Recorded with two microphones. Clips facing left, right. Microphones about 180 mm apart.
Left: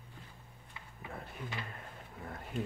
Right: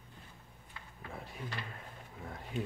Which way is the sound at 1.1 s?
Centre (ahead or behind).